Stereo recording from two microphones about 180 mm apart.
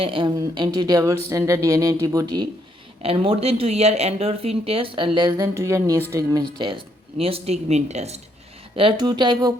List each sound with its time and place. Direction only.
0.0 s speech: 30° right (ahead or behind)
3.0 s speech: 30° right (ahead or behind)
7.2 s speech: 35° right (ahead or behind)